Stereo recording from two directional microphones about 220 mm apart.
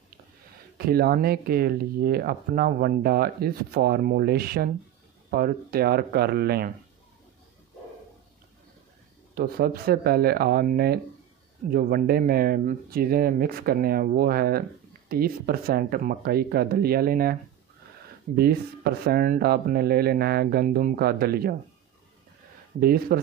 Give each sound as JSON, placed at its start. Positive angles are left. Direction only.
{"t": 0.7, "sound": "speech", "side_deg": -45}
{"t": 9.3, "sound": "speech", "side_deg": -40}
{"t": 22.8, "sound": "speech", "side_deg": -45}